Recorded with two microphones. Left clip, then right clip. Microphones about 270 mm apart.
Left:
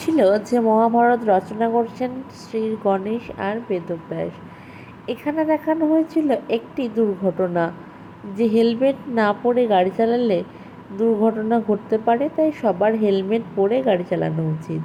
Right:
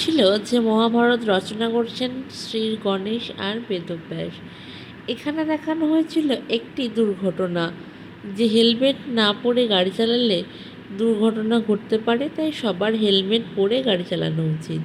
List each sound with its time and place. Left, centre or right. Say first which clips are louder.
0.0 s a woman's voice: left 1 dB; centre